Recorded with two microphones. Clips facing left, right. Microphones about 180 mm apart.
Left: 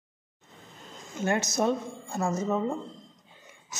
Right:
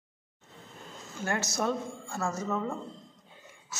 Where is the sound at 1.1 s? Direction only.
20° left (ahead or behind).